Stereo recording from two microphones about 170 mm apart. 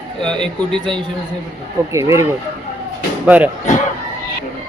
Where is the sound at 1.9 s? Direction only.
15° right (ahead or behind).